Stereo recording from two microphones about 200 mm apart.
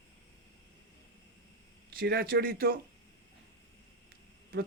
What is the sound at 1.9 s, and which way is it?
Speech, 50° right (ahead or behind).